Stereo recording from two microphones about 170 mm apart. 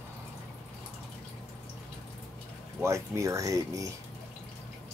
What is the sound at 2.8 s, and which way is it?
Speech, 15° right (ahead or behind).